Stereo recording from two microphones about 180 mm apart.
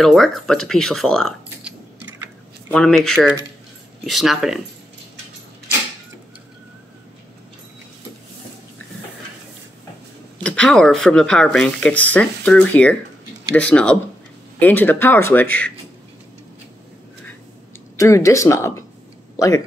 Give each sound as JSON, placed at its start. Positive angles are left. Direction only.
{"t": 0.0, "sound": "speech", "side_deg": 0}
{"t": 2.7, "sound": "speech", "side_deg": 5}
{"t": 10.4, "sound": "speech", "side_deg": 5}
{"t": 17.9, "sound": "speech", "side_deg": 15}